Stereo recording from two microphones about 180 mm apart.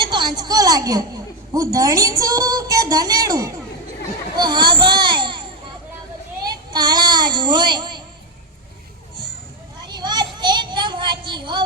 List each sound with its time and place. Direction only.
0.0 s a woman's voice: 25° right (ahead or behind)
6.4 s child singing: 20° right (ahead or behind)
9.8 s a sound: 25° right (ahead or behind)